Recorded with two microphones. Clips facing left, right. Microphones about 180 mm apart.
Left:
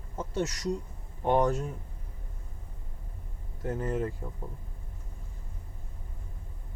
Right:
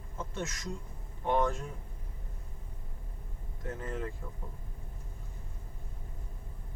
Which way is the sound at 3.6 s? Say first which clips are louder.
Left 7 dB; 40° left (ahead or behind).